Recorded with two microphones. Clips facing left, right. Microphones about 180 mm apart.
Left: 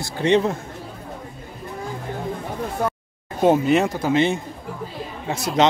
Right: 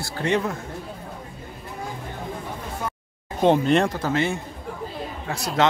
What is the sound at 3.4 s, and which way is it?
Speech, 5° left (ahead or behind).